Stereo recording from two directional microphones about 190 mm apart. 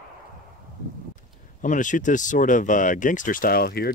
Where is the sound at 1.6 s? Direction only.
40° left (ahead or behind).